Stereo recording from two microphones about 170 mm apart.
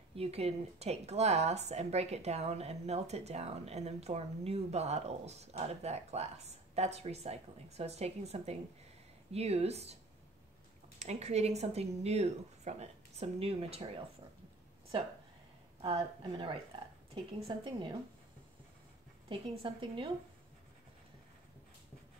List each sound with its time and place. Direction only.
0.1 s speech: 35° right (ahead or behind)
11.0 s speech: 40° right (ahead or behind)
15.8 s a woman's voice: 30° right (ahead or behind)
19.2 s a woman's voice: 30° right (ahead or behind)